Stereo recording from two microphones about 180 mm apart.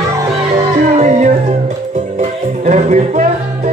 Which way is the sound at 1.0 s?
40° right (ahead or behind).